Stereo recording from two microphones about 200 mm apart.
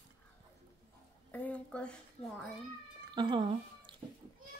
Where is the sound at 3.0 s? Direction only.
20° right (ahead or behind).